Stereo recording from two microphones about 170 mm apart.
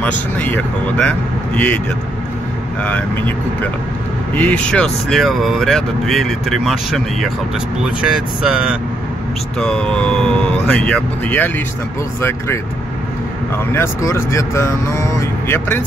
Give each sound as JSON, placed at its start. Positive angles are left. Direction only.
{"t": 0.0, "sound": "speech", "side_deg": 10}
{"t": 2.8, "sound": "speech", "side_deg": 10}
{"t": 13.7, "sound": "speech", "side_deg": 15}